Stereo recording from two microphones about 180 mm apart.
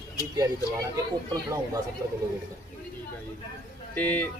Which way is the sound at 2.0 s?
20° right (ahead or behind).